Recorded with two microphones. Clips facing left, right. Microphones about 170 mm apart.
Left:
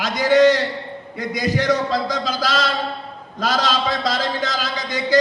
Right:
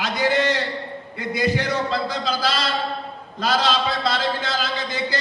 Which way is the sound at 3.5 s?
40° left (ahead or behind).